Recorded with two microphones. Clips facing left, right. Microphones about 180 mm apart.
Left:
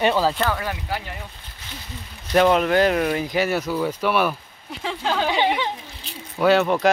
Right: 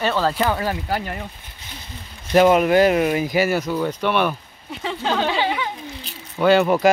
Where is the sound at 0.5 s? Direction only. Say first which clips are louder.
Right 4 dB; 35° right (ahead or behind).